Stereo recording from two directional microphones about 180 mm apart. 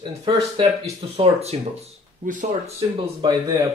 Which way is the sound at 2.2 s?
45° right (ahead or behind).